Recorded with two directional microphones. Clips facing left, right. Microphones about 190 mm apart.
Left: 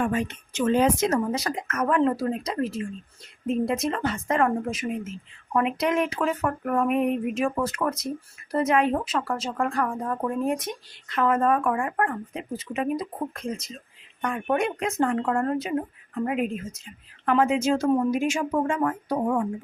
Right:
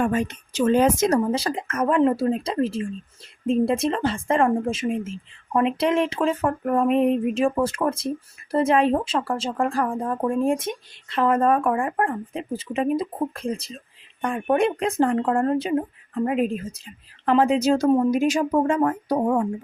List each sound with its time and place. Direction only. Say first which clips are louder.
0.0 s a woman's voice: right 3 dB; 40° right (ahead or behind)
1.3 s a woman's voice: right 3 dB; 30° right (ahead or behind)